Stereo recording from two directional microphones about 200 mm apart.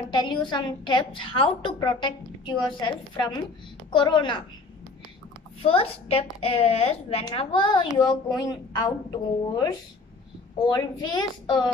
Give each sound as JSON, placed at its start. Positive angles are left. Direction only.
{"t": 0.1, "sound": "a child's voice", "side_deg": 25}
{"t": 5.6, "sound": "a child's voice", "side_deg": 30}